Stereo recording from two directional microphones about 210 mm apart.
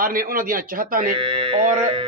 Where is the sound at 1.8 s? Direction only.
25° right (ahead or behind).